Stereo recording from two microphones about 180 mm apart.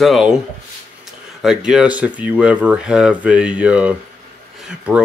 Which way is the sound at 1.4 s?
5° right (ahead or behind).